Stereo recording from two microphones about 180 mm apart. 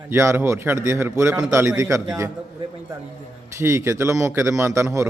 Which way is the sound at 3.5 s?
15° right (ahead or behind).